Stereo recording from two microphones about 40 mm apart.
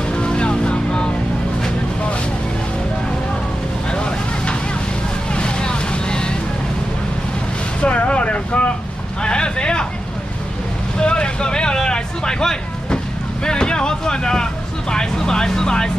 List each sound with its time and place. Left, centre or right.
0.1 s vehicle: left
3.9 s vehicle: left
7.8 s vehicle: left
9.2 s a sound: left
11.0 s vehicle: left